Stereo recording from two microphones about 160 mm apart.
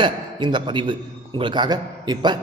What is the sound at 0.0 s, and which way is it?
A man's voice, 30° right (ahead or behind).